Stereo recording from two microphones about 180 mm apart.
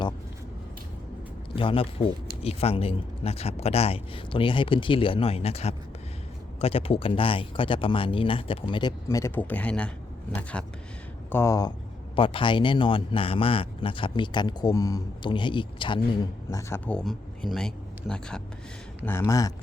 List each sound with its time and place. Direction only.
1.5 s a man's voice: 30° left (ahead or behind)
9.0 s a man's voice: 15° left (ahead or behind)
12.1 s a man's voice: 30° left (ahead or behind)
16.5 s speech: 15° left (ahead or behind)
19.0 s a man's voice: 15° left (ahead or behind)